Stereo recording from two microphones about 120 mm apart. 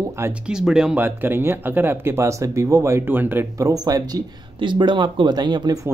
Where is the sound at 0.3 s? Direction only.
5° right (ahead or behind).